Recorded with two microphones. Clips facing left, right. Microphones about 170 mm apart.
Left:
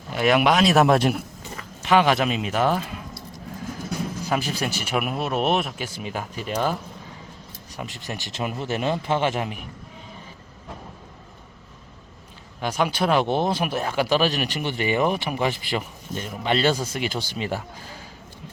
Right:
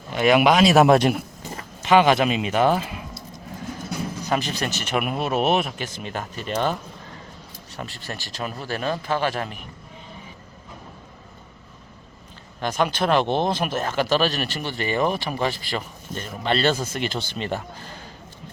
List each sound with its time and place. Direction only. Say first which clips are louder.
0.1 s speech: right 2 dB; centre (ahead or behind)
4.3 s speech: right 1 dB; 10° left (ahead or behind)
12.5 s speech: right 1 dB; 10° left (ahead or behind)